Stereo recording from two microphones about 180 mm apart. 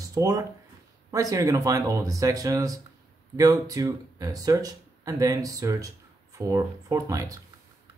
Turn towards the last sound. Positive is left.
turn(degrees=-20)  # may be behind; listen again after turning